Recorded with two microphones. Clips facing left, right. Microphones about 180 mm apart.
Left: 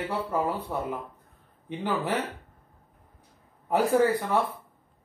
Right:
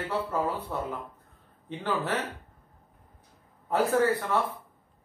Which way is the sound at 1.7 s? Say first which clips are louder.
Left 2 dB; 15° left (ahead or behind).